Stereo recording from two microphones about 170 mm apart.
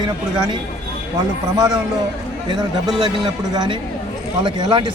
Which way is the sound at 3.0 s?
25° right (ahead or behind).